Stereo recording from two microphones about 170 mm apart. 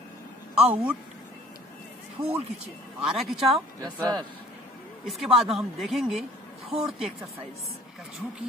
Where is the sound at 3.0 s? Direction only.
Centre (ahead or behind).